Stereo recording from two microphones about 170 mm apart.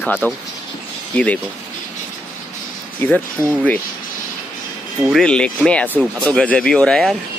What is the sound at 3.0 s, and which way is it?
Speech, 15° left (ahead or behind).